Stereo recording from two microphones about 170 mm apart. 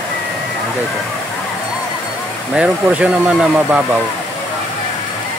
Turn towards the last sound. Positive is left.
turn(degrees=-5)  # may be behind; listen again after turning